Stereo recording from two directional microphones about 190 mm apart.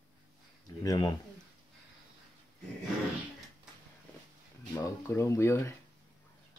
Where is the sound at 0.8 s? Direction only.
20° left (ahead or behind).